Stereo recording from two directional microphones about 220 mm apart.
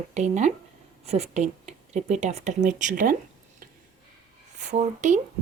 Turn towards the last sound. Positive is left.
turn(degrees=-35)  # may be behind; listen again after turning